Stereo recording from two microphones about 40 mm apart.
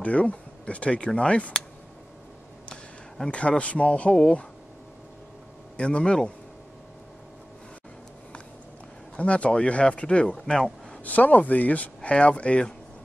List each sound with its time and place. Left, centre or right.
0.0 s speech: left
3.3 s speech: left
5.8 s speech: left
9.2 s speech: left; by 10.7 s centre
11.1 s speech: left